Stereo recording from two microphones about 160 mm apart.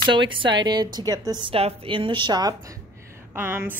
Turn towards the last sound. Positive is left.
turn(degrees=-15)  # may be behind; listen again after turning